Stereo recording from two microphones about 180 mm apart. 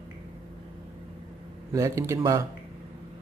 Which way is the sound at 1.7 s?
20° right (ahead or behind).